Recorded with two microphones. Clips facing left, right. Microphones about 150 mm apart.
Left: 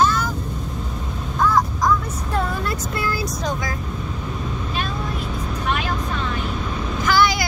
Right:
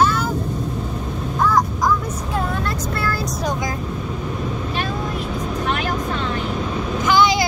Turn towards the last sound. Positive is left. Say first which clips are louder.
# right 2 dB
turn(degrees=-20)  # may be behind; listen again after turning